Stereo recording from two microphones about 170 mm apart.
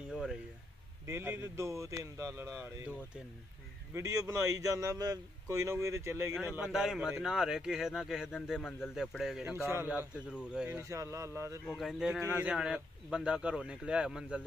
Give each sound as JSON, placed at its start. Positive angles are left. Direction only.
{"t": 0.1, "sound": "a sound", "side_deg": -5}
{"t": 1.0, "sound": "speech", "side_deg": -15}
{"t": 3.9, "sound": "a man's voice", "side_deg": -20}
{"t": 9.6, "sound": "speech", "side_deg": -15}
{"t": 10.8, "sound": "speech", "side_deg": -15}
{"t": 11.6, "sound": "speech", "side_deg": 0}
{"t": 12.2, "sound": "speech", "side_deg": -15}